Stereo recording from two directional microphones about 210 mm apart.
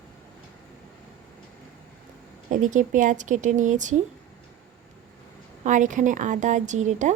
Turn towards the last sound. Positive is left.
turn(degrees=-35)  # may be behind; listen again after turning